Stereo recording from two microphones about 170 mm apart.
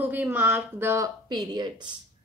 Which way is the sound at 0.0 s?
10° right (ahead or behind).